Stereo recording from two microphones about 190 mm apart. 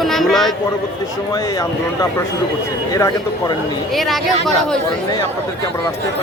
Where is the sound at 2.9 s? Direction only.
20° left (ahead or behind).